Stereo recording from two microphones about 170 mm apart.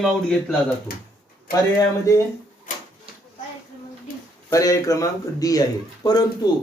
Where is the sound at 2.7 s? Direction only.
50° left (ahead or behind).